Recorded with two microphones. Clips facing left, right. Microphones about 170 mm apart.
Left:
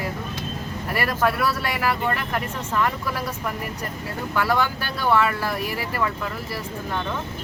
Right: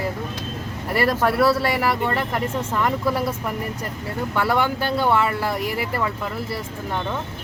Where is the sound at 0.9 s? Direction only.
30° right (ahead or behind).